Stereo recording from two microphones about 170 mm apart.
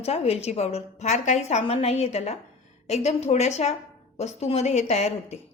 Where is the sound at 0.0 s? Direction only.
35° left (ahead or behind).